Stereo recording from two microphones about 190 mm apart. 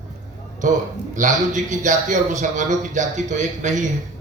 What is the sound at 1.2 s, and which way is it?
A man's voice, 40° right (ahead or behind).